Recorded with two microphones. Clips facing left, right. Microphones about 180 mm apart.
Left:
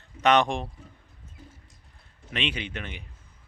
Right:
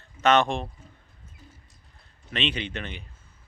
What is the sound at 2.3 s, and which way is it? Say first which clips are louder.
Speech: right 2 dB; 10° left (ahead or behind).